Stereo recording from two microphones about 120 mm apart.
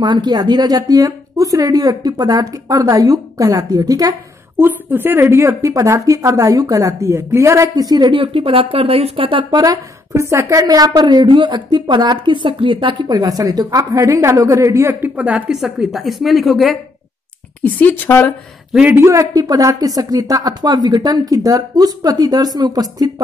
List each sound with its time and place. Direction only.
0.0 s speech: 35° right (ahead or behind)
4.6 s a woman's voice: 15° right (ahead or behind); by 9.6 s 45° right (ahead or behind)
9.6 s a woman's voice: 25° right (ahead or behind); by 16.7 s centre (ahead or behind)
17.6 s a woman's voice: 15° left (ahead or behind)
18.7 s a man's voice: 5° right (ahead or behind)
18.9 s speech: 25° right (ahead or behind)